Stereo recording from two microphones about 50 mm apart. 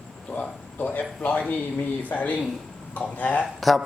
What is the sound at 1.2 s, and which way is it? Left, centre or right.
Speech, left.